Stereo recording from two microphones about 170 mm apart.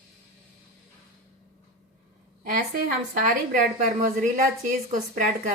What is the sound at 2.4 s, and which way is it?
A woman's voice, 50° right (ahead or behind).